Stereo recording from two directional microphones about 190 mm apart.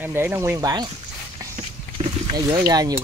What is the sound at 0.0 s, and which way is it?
Speech, 10° right (ahead or behind).